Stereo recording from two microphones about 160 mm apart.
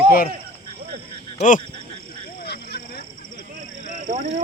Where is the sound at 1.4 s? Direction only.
55° left (ahead or behind).